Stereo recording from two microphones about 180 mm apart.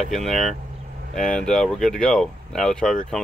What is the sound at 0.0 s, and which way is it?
Speech, centre (ahead or behind).